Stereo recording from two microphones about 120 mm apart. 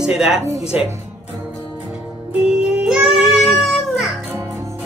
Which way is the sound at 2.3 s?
5° right (ahead or behind).